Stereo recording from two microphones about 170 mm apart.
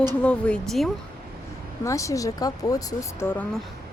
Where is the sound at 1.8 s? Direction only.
20° left (ahead or behind).